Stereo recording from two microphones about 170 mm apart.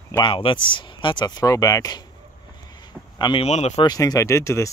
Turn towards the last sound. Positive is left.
turn(degrees=15)  # may be behind; listen again after turning